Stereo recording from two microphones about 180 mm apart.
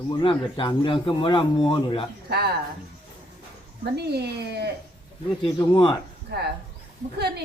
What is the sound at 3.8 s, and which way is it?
Speech, 65° right (ahead or behind).